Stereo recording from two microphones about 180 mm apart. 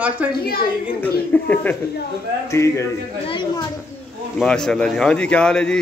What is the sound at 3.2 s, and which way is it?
Speech, 25° left (ahead or behind).